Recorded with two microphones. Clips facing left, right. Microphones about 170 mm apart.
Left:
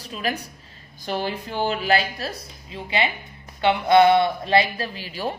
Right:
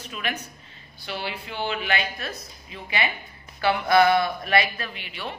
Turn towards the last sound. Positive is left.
turn(degrees=40)  # may be behind; listen again after turning